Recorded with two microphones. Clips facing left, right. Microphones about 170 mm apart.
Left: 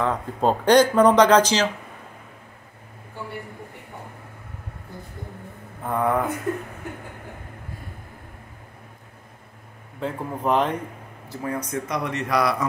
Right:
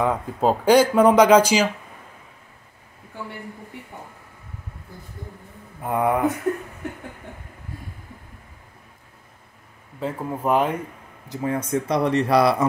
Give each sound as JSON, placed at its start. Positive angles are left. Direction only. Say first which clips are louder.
{"t": 0.0, "sound": "speech", "louder": "right 1 dB", "side_deg": -5}
{"t": 5.9, "sound": "speech", "louder": "right 1 dB", "side_deg": -10}
{"t": 9.9, "sound": "speech", "louder": "right 1 dB", "side_deg": -5}
{"t": 11.2, "sound": "speech", "louder": "right 4 dB", "side_deg": -25}